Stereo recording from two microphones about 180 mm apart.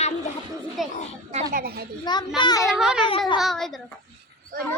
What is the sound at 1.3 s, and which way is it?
Speech, 50° right (ahead or behind).